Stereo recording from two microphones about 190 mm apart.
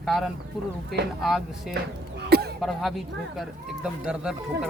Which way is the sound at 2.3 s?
55° right (ahead or behind).